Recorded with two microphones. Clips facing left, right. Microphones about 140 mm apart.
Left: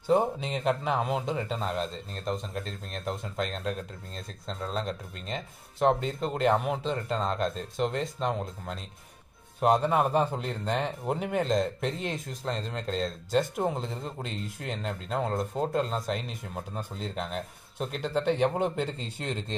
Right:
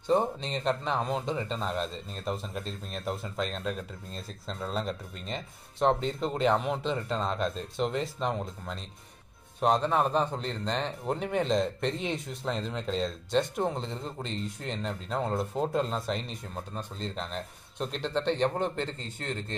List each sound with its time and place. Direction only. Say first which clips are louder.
0.0 s speech: left 2 dB; 5° left (ahead or behind)